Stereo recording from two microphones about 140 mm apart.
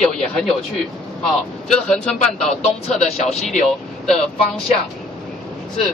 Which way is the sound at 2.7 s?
50° left (ahead or behind).